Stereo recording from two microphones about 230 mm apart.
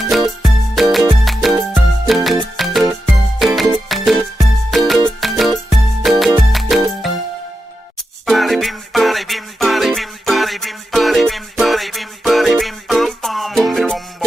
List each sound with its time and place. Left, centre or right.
0.0 s music: centre
8.3 s music: centre